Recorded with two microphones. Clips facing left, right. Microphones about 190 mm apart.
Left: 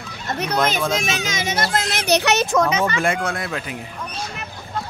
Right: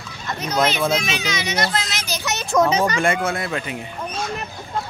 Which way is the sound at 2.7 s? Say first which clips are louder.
Right 1 dB; 35° right (ahead or behind).